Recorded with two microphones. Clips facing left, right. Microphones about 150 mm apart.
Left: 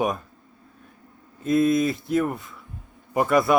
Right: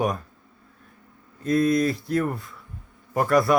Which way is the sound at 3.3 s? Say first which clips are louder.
Right 1 dB; centre (ahead or behind).